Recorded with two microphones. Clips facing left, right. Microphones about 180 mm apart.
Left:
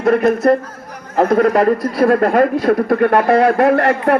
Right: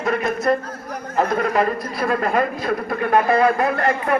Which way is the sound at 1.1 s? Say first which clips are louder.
Left 7 dB; 75° left (ahead or behind).